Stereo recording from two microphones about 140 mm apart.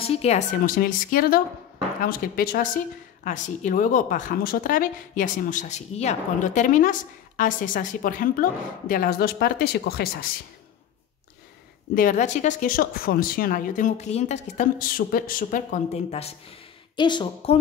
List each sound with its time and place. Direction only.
0.0 s a woman's voice: 45° left (ahead or behind); by 2.8 s 85° left
3.3 s a woman's voice: 65° left (ahead or behind); by 9.7 s 90° left
11.9 s a woman's voice: 70° left (ahead or behind); by 16.3 s 50° left (ahead or behind)
16.9 s a woman's voice: 35° left (ahead or behind)